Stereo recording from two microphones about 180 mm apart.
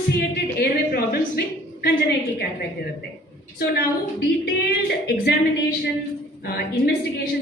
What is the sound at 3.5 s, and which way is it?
A woman's voice, 70° left (ahead or behind).